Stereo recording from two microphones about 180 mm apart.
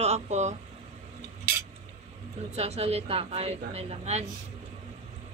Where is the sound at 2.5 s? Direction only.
35° right (ahead or behind).